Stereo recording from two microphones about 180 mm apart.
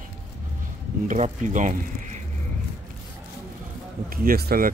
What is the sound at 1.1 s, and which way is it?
Speech, 45° right (ahead or behind).